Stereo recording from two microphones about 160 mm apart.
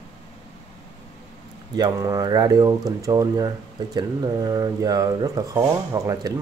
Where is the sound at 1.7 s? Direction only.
25° right (ahead or behind).